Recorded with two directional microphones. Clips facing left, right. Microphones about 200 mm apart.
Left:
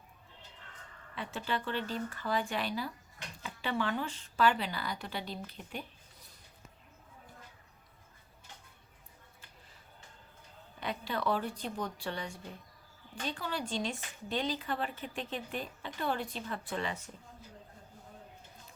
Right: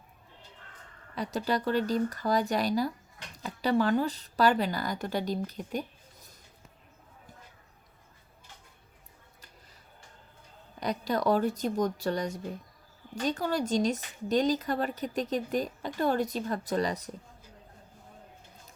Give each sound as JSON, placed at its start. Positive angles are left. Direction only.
{"t": 1.1, "sound": "a woman's voice", "side_deg": -40}
{"t": 10.8, "sound": "a woman's voice", "side_deg": -40}